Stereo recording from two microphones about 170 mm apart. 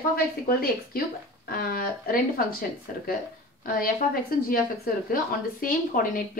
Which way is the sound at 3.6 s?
60° left (ahead or behind).